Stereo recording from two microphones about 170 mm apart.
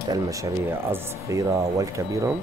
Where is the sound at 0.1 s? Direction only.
20° right (ahead or behind).